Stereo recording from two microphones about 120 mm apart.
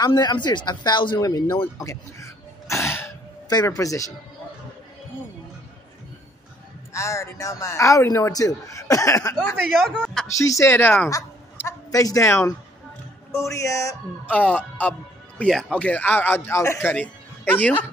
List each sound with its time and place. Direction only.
0.0 s speech: 35° left (ahead or behind)
6.9 s speech: 25° left (ahead or behind)
9.7 s speech: 5° left (ahead or behind)
10.3 s speech: 25° left (ahead or behind)
14.2 s speech: 10° left (ahead or behind)